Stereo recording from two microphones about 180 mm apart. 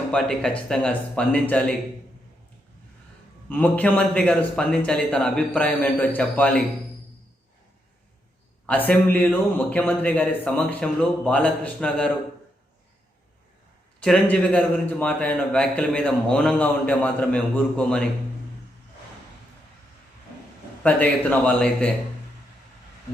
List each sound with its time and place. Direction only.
0.1 s a man's voice: 5° left (ahead or behind)
3.5 s a man's voice: 10° left (ahead or behind)
8.6 s a man's voice: 10° left (ahead or behind)
14.0 s a man's voice: 5° left (ahead or behind)
20.8 s a man's voice: 10° left (ahead or behind)